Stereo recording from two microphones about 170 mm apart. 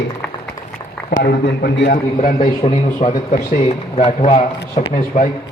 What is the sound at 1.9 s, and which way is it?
Speech, 50° left (ahead or behind).